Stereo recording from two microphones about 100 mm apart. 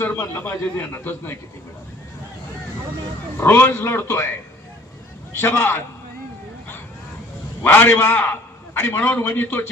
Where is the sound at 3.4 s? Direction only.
20° left (ahead or behind).